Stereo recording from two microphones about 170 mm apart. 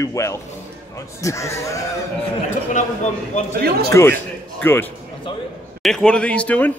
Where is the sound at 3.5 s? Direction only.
65° right (ahead or behind).